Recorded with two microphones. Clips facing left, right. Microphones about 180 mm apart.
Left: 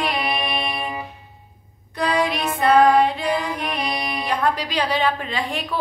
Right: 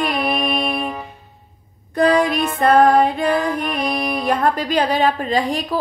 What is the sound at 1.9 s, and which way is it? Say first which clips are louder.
Music: right 6 dB; 50° right (ahead or behind).